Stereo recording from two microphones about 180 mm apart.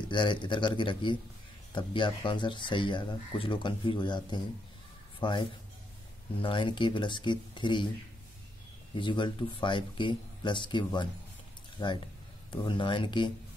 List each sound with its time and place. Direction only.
0.1 s speech: 25° left (ahead or behind)
8.9 s speech: 25° left (ahead or behind)